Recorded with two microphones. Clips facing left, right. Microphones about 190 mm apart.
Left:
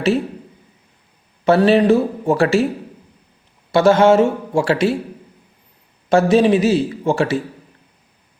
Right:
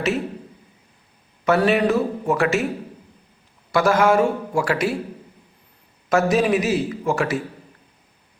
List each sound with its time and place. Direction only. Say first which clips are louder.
1.5 s a man's voice: left 5 dB; 30° left (ahead or behind)
3.7 s a man's voice: left 5 dB; 25° left (ahead or behind)
6.1 s a man's voice: left 5 dB; 30° left (ahead or behind)